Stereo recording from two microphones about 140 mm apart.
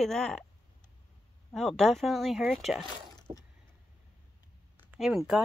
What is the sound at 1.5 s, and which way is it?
Speech, centre (ahead or behind).